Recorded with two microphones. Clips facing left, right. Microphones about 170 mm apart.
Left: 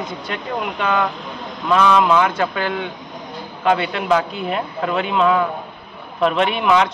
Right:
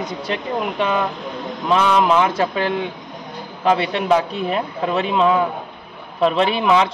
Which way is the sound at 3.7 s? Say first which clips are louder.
Right 1 dB; 30° right (ahead or behind).